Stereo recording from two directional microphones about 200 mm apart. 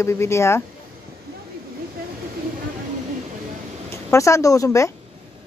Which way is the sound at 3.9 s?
15° left (ahead or behind).